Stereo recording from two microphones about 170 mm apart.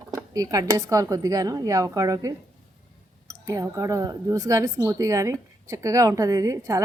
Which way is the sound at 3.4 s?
20° right (ahead or behind).